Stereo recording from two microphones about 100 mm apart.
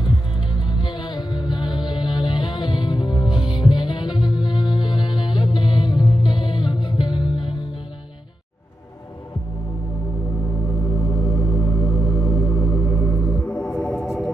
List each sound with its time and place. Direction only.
0.6 s music: 50° left (ahead or behind)
10.7 s organ: 35° left (ahead or behind); by 14.3 s centre (ahead or behind)